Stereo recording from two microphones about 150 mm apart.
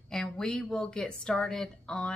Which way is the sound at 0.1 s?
5° left (ahead or behind).